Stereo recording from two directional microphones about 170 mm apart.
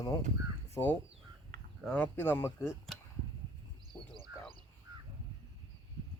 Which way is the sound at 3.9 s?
5° left (ahead or behind).